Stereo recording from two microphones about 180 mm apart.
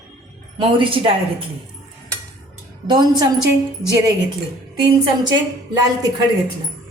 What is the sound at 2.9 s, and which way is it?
Speech, 25° right (ahead or behind).